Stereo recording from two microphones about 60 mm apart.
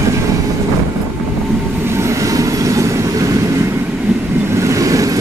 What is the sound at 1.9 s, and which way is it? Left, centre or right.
Train, right.